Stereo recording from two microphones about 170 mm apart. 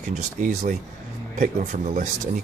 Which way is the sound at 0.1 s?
50° right (ahead or behind).